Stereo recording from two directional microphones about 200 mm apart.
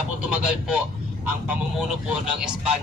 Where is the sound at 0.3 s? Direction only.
5° right (ahead or behind).